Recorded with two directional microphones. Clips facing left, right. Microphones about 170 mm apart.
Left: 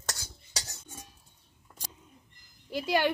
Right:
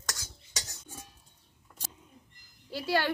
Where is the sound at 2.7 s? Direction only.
15° left (ahead or behind).